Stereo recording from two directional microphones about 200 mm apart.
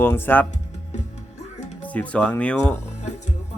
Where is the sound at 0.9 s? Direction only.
35° left (ahead or behind).